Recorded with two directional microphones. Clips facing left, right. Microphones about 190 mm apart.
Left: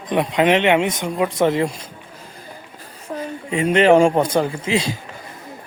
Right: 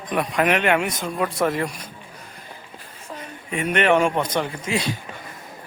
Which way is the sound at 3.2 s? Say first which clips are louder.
Left 6 dB; 25° left (ahead or behind).